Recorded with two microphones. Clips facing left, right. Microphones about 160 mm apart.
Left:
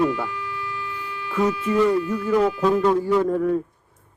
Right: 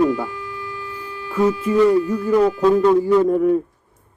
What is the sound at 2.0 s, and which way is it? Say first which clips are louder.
Speech: right 3 dB; 40° right (ahead or behind).